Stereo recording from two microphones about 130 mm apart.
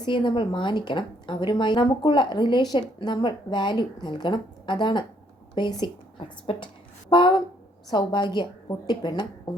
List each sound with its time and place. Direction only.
0.0 s a woman's voice: 35° left (ahead or behind)